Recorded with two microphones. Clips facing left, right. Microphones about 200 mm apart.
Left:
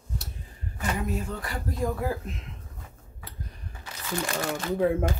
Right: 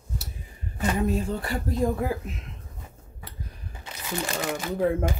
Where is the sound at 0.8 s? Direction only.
30° right (ahead or behind).